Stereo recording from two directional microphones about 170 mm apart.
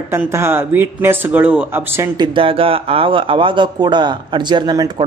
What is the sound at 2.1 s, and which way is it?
Speech, 30° right (ahead or behind).